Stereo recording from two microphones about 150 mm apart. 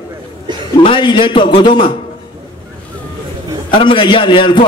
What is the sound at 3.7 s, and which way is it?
Speech, 35° left (ahead or behind).